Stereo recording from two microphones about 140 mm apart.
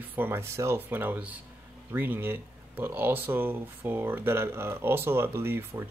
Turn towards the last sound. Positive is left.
turn(degrees=-15)  # may be behind; listen again after turning